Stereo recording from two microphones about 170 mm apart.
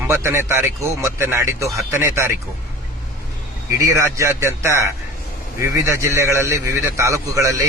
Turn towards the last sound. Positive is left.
turn(degrees=-15)  # may be behind; listen again after turning